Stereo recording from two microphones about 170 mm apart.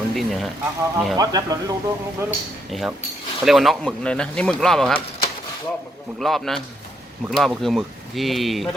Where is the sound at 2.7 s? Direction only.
Centre (ahead or behind).